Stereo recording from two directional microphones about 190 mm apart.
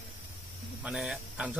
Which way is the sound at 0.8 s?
5° right (ahead or behind).